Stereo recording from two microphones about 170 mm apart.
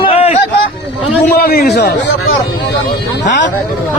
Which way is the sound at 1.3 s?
65° left (ahead or behind).